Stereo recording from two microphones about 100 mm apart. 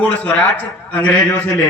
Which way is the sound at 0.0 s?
15° left (ahead or behind).